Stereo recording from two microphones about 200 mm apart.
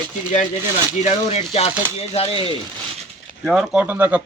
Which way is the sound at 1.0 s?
30° left (ahead or behind).